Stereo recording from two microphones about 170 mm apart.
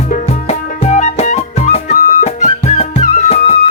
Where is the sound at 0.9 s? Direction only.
40° left (ahead or behind).